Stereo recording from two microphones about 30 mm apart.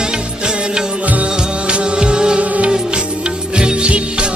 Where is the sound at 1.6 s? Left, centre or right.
Right.